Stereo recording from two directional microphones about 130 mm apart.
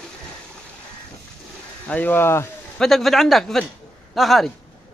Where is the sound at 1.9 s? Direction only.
15° left (ahead or behind).